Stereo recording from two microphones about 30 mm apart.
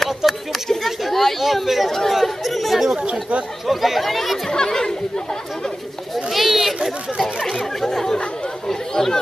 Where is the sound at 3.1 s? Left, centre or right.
Right.